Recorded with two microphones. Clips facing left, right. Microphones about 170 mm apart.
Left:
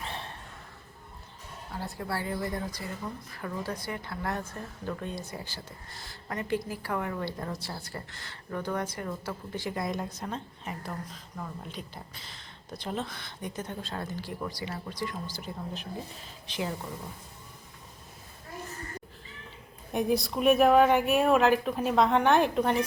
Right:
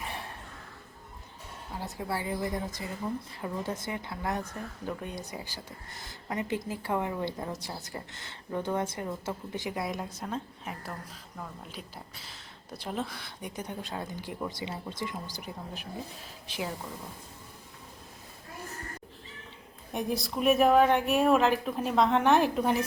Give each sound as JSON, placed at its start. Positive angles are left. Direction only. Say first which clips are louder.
{"t": 0.0, "sound": "a sound", "louder": "even", "side_deg": -10}
{"t": 1.8, "sound": "a woman's voice", "louder": "even", "side_deg": -15}
{"t": 19.9, "sound": "speech", "louder": "left 4 dB", "side_deg": 0}